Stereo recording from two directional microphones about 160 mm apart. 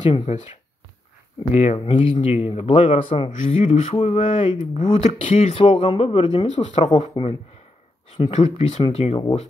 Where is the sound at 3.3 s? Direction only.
45° left (ahead or behind).